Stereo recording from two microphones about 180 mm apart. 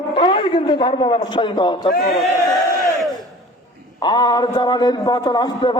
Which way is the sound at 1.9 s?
55° left (ahead or behind).